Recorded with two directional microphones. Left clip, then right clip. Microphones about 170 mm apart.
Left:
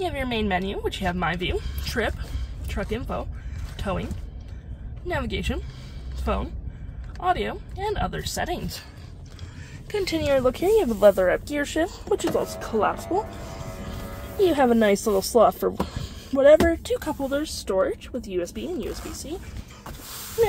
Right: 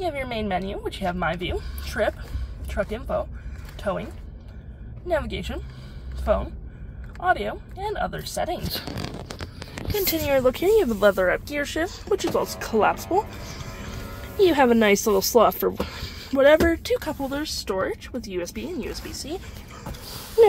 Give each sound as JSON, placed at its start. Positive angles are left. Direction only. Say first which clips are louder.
{"t": 0.0, "sound": "a woman's voice", "louder": "left 1 dB", "side_deg": 0}
{"t": 5.0, "sound": "speech", "louder": "right 2 dB", "side_deg": 0}
{"t": 9.9, "sound": "speech", "louder": "even", "side_deg": 5}
{"t": 11.1, "sound": "speech", "louder": "left 2 dB", "side_deg": 15}
{"t": 11.9, "sound": "speech", "louder": "even", "side_deg": 5}
{"t": 14.4, "sound": "speech", "louder": "right 2 dB", "side_deg": 0}